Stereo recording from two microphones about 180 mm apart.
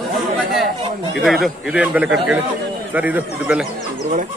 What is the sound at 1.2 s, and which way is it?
A man's voice, centre (ahead or behind).